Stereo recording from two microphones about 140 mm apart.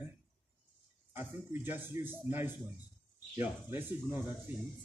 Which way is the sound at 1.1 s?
15° right (ahead or behind).